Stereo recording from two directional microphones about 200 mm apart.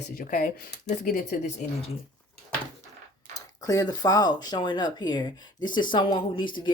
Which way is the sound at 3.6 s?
20° left (ahead or behind).